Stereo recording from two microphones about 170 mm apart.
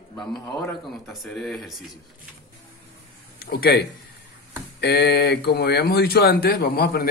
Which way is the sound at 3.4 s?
65° left (ahead or behind).